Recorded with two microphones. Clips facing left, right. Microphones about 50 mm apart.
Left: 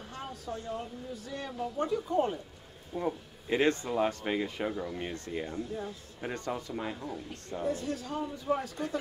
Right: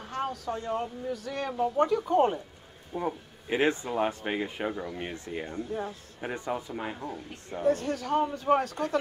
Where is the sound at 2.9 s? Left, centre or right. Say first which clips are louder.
Right 1 dB; centre.